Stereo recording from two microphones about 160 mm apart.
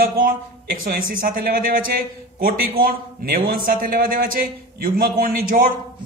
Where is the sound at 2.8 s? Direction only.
65° right (ahead or behind).